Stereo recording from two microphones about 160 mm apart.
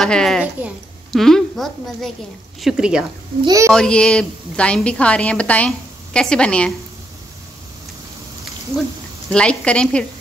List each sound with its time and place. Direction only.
0.0 s a woman's voice: 5° left (ahead or behind)
0.6 s a woman's voice: 10° right (ahead or behind)
1.1 s a woman's voice: centre (ahead or behind)
3.4 s speech: 20° right (ahead or behind)
3.7 s a woman's voice: 5° left (ahead or behind)
9.3 s a woman's voice: 5° left (ahead or behind)